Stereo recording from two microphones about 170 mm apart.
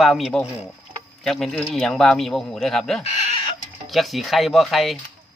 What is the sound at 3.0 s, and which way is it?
Chicken, 40° left (ahead or behind).